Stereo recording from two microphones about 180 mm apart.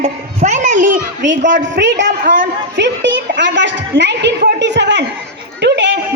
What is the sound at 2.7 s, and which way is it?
A woman's voice, 85° right.